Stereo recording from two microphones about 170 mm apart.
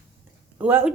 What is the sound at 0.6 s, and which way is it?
Speech, 10° right (ahead or behind).